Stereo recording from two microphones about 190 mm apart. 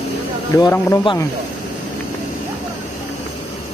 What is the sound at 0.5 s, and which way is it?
Speech, 20° left (ahead or behind).